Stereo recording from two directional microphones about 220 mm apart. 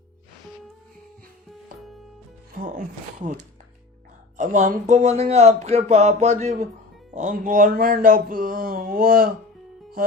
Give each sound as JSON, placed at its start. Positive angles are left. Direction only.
{"t": 2.6, "sound": "speech", "side_deg": -35}
{"t": 4.4, "sound": "speech", "side_deg": -35}